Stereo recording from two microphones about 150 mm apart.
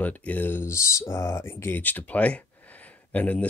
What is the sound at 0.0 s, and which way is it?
Speech, 10° left (ahead or behind).